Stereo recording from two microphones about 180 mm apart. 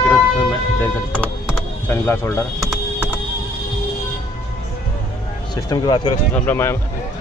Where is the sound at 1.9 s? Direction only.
15° left (ahead or behind).